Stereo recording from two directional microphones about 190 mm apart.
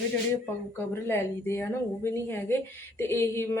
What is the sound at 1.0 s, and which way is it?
Speech, 15° left (ahead or behind).